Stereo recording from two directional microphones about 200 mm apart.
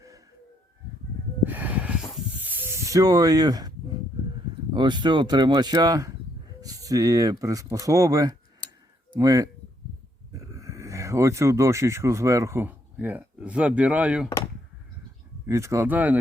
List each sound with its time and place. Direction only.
1.5 s snort: 10° right (ahead or behind)
2.4 s snake: 10° right (ahead or behind)
4.7 s speech: 25° right (ahead or behind); by 14.3 s 5° right (ahead or behind)
15.4 s speech: 15° right (ahead or behind)